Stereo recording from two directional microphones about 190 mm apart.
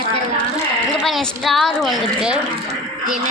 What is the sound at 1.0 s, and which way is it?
A woman's voice, centre (ahead or behind).